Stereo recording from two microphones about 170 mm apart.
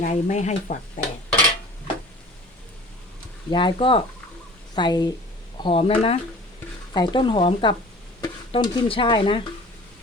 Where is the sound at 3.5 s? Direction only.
30° left (ahead or behind).